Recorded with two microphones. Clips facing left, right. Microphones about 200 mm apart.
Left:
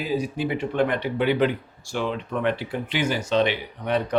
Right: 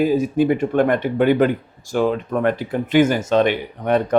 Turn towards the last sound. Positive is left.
turn(degrees=-50)  # may be behind; listen again after turning